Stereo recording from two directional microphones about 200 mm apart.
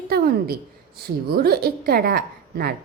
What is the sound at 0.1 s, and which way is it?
A woman's voice, 50° right (ahead or behind).